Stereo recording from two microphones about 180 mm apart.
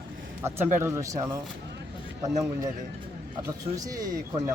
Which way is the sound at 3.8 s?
20° right (ahead or behind).